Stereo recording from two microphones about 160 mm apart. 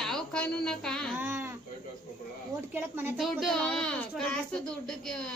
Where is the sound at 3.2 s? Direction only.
Centre (ahead or behind).